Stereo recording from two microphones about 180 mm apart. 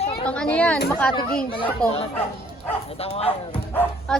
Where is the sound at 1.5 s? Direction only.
30° left (ahead or behind).